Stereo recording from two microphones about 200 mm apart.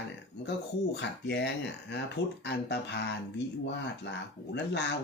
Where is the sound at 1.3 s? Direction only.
60° left (ahead or behind).